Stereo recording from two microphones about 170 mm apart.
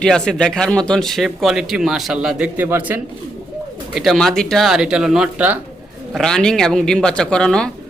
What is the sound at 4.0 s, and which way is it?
Speech, centre (ahead or behind).